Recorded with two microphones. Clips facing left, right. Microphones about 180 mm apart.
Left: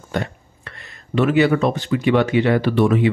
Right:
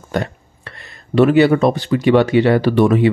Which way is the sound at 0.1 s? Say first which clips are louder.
Right 3 dB; 40° right (ahead or behind).